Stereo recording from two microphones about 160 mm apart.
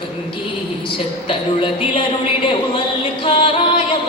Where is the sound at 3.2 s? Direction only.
35° left (ahead or behind).